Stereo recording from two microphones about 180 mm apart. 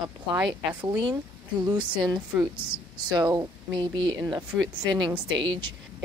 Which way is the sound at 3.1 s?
20° right (ahead or behind).